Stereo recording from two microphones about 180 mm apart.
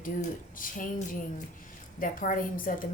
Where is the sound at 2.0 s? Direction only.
50° left (ahead or behind).